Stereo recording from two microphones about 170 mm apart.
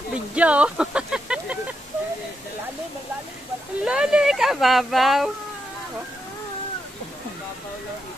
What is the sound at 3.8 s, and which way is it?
Speech, 5° right (ahead or behind).